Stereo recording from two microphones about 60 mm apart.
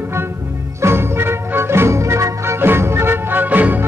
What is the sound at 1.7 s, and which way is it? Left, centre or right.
Music, right.